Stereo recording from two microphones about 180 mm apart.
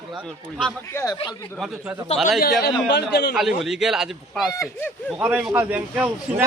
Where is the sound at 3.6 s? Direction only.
Centre (ahead or behind).